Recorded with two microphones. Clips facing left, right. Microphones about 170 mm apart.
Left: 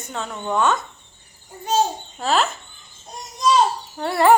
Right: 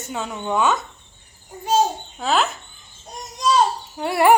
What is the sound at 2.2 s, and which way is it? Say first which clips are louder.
Speech: even; centre (ahead or behind).